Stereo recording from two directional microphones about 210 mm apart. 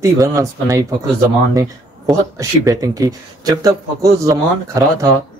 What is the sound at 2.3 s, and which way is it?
Speech, 15° right (ahead or behind).